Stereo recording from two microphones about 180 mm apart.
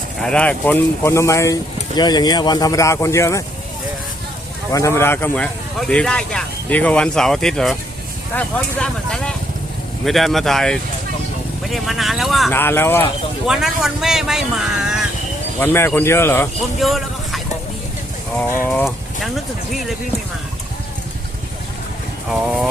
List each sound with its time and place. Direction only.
0.2 s speech: 5° left (ahead or behind)
4.7 s speech: 15° left (ahead or behind); by 12.5 s centre (ahead or behind)
12.5 s speech: 10° left (ahead or behind)
13.5 s speech: centre (ahead or behind)
15.6 s speech: 15° left (ahead or behind)
16.8 s a sound: centre (ahead or behind)
18.4 s speech: 15° left (ahead or behind)
22.3 s speech: centre (ahead or behind)